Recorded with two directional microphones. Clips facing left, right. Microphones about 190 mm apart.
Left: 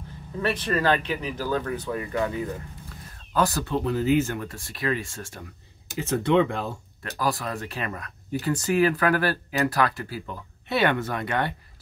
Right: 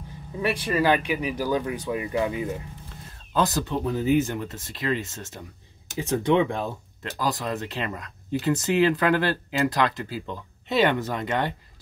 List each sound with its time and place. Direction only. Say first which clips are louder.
0.4 s speech: right 1 dB; 10° right (ahead or behind)